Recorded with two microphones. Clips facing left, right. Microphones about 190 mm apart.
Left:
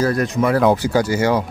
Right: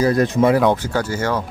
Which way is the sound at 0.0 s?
25° right (ahead or behind).